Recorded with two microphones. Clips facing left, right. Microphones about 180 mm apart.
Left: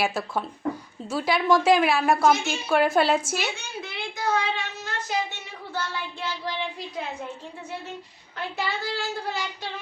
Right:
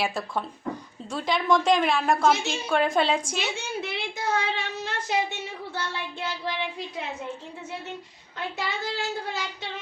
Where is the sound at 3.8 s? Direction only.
25° right (ahead or behind).